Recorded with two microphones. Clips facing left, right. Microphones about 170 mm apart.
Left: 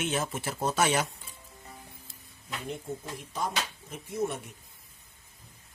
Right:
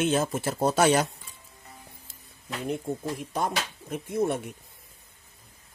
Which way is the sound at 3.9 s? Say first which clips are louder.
Right 6 dB; 60° right (ahead or behind).